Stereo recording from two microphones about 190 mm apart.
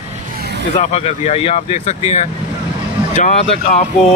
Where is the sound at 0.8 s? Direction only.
35° left (ahead or behind).